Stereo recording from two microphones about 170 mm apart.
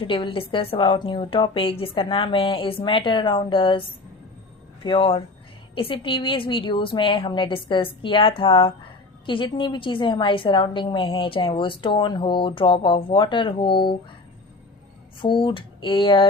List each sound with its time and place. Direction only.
0.0 s a woman's voice: 30° left (ahead or behind)
15.2 s a woman's voice: 30° left (ahead or behind)